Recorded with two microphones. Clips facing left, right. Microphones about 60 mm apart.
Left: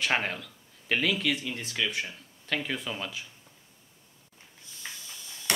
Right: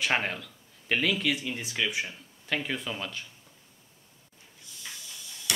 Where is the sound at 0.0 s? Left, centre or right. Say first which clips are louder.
Even; centre.